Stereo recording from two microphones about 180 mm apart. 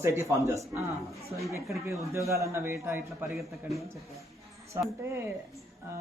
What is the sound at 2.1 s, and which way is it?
Speech, 15° right (ahead or behind).